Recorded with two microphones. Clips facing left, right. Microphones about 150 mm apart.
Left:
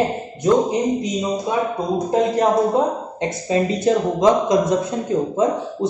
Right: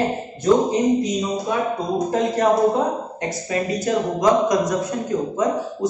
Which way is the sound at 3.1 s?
25° left (ahead or behind).